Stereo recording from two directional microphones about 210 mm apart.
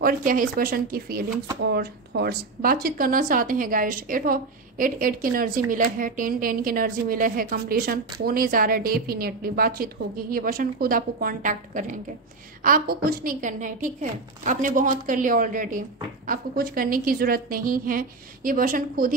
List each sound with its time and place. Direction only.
0.0 s a woman's voice: 40° right (ahead or behind)